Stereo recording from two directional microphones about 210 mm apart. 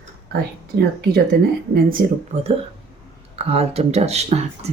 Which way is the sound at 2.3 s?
30° right (ahead or behind).